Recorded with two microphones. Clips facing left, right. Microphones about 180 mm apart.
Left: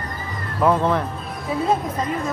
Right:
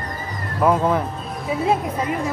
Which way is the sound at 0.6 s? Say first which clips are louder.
Even; 10° right (ahead or behind).